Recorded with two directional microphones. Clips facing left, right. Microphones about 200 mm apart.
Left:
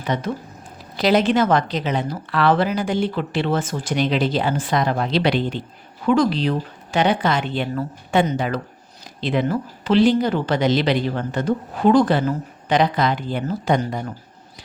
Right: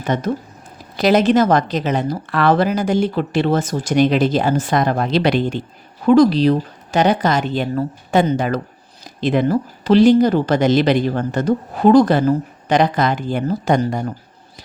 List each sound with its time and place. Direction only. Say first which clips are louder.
0.0 s speech: right 4 dB; 45° right (ahead or behind)